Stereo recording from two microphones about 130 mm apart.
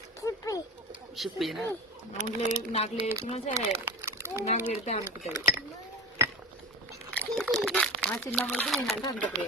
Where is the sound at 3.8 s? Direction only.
15° right (ahead or behind).